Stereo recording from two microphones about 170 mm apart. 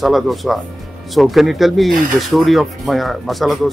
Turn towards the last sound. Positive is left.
turn(degrees=0)  # may be behind; listen again after turning